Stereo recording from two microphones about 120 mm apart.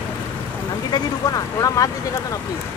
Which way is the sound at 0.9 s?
35° left (ahead or behind).